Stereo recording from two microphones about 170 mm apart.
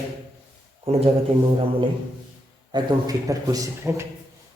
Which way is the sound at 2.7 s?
20° right (ahead or behind).